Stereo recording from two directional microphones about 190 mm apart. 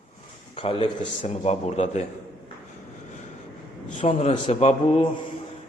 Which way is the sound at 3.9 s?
35° left (ahead or behind).